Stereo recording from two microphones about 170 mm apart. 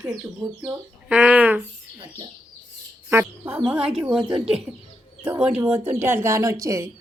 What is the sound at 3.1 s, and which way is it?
Speech, 10° right (ahead or behind).